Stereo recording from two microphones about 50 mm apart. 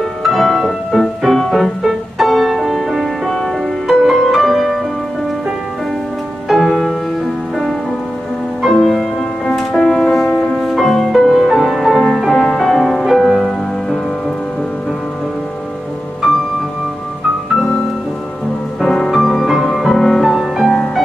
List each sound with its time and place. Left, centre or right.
0.2 s music: centre
6.5 s music: centre
8.6 s music: centre
10.7 s music: centre
11.9 s music: centre
18.8 s music: centre